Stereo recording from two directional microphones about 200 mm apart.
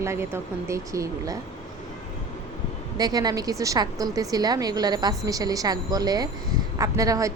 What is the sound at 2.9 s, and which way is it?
A woman's voice, 20° right (ahead or behind).